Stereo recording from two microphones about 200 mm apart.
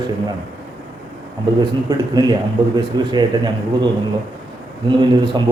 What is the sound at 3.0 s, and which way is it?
Speech, 20° right (ahead or behind).